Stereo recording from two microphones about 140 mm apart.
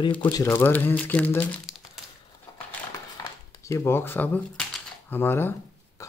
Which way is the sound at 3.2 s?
20° left (ahead or behind).